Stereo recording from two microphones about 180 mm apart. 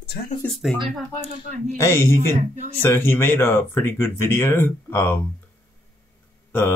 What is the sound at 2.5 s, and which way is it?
Speech, 35° right (ahead or behind).